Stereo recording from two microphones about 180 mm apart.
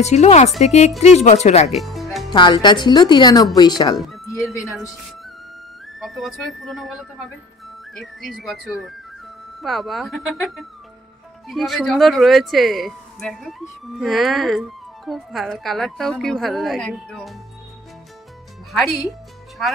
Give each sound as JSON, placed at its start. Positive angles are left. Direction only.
{"t": 0.0, "sound": "speech", "side_deg": 40}
{"t": 1.7, "sound": "speech", "side_deg": 0}
{"t": 2.3, "sound": "a woman's voice", "side_deg": 25}
{"t": 5.9, "sound": "speech", "side_deg": 0}
{"t": 18.7, "sound": "speech", "side_deg": 0}